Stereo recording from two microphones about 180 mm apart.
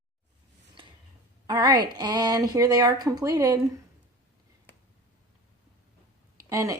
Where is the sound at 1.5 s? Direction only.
20° right (ahead or behind).